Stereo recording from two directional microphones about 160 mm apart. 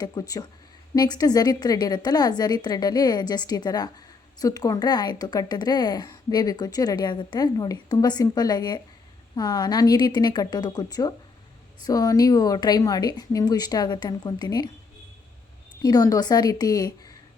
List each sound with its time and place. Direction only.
0.0 s a woman's voice: 25° left (ahead or behind)
15.8 s a woman's voice: 25° left (ahead or behind)